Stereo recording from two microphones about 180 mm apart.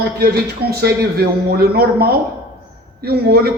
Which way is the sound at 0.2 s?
60° right (ahead or behind).